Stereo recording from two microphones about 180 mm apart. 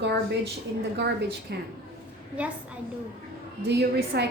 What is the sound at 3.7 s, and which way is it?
Speech, 65° right (ahead or behind).